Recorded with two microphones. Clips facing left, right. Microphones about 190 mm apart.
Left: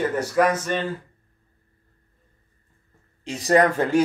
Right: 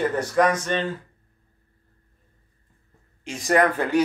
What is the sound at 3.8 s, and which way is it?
Speech, 45° left (ahead or behind).